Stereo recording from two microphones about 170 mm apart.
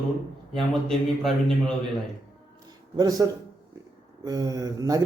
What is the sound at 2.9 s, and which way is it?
Speech, 20° right (ahead or behind).